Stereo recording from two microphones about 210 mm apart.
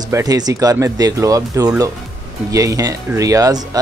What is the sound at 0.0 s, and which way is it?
Speech, 15° right (ahead or behind).